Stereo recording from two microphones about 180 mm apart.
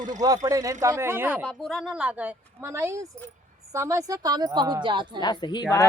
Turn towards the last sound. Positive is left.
turn(degrees=25)  # may be behind; listen again after turning